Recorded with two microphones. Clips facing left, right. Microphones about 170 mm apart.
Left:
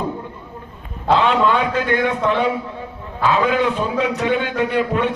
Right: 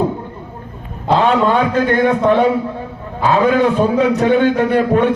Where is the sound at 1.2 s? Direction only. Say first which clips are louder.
Right 6 dB; 45° right (ahead or behind).